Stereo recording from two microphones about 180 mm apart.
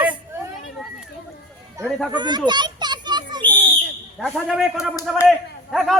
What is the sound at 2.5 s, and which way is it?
Children playing, 25° right (ahead or behind).